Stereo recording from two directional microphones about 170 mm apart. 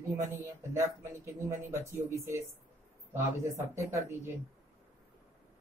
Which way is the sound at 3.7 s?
15° right (ahead or behind).